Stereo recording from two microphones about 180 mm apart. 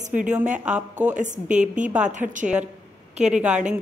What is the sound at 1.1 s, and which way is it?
Speech, 45° right (ahead or behind).